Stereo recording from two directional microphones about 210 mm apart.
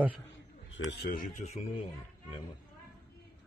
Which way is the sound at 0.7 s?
55° left (ahead or behind).